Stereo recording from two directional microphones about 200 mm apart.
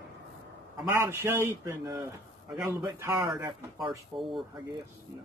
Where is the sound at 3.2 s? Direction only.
Centre (ahead or behind).